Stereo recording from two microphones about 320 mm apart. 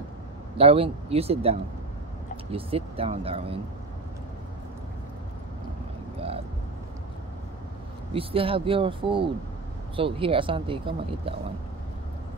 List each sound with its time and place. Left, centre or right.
0.6 s speech: centre
8.1 s speech: centre